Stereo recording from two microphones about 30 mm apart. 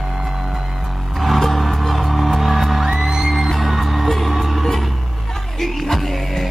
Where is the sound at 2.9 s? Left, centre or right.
Centre.